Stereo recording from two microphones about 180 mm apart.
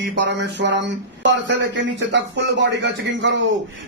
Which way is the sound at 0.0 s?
75° right (ahead or behind).